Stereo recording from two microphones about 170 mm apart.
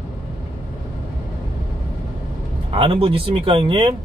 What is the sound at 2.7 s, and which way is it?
Speech, 35° right (ahead or behind).